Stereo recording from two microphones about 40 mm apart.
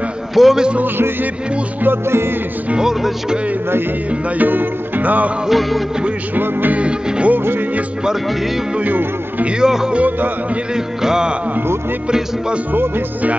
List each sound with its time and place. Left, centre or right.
0.3 s a man's voice: centre
1.8 s music: right
2.8 s speech: centre
4.4 s music: right
5.5 s music: centre
6.3 s music: right
6.8 s music: right
7.3 s music: right
8.8 s music: right
9.6 s speech: centre
11.0 s speech: centre